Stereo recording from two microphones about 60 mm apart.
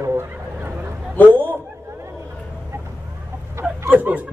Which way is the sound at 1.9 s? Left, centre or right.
Right.